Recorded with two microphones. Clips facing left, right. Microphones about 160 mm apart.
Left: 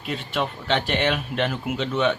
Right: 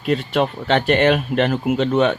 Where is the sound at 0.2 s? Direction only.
50° right (ahead or behind).